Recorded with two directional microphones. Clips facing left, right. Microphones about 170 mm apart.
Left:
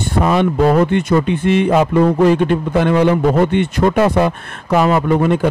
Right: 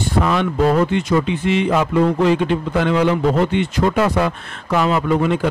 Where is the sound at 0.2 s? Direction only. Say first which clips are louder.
Left 4 dB; 50° left (ahead or behind).